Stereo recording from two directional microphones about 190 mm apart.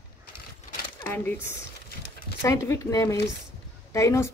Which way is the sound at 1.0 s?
10° left (ahead or behind).